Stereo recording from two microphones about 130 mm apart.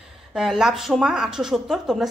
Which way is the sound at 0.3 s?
5° right (ahead or behind).